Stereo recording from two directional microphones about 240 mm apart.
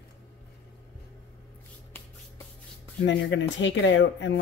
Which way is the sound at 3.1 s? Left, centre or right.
Left.